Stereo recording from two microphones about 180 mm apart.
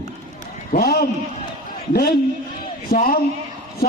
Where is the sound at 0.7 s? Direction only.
60° left (ahead or behind).